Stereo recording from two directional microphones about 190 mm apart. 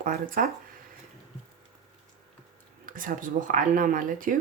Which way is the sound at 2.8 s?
45° right (ahead or behind).